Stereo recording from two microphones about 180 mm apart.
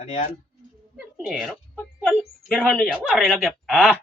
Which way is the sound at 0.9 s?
5° right (ahead or behind).